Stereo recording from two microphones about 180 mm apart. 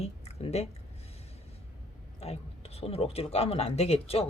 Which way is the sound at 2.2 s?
35° left (ahead or behind).